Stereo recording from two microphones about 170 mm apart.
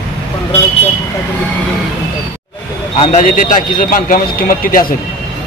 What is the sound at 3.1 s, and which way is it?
Speech, 50° left (ahead or behind).